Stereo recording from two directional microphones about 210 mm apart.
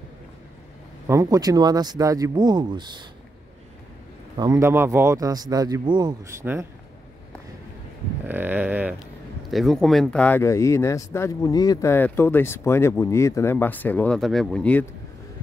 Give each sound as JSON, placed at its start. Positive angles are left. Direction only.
{"t": 1.0, "sound": "speech", "side_deg": -15}
{"t": 4.4, "sound": "speech", "side_deg": -15}
{"t": 8.3, "sound": "speech", "side_deg": -10}